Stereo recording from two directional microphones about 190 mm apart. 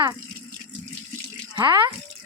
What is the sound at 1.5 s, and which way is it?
Speech, 25° right (ahead or behind).